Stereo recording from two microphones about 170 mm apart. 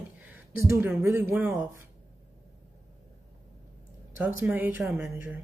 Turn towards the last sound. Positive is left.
turn(degrees=-10)  # may be behind; listen again after turning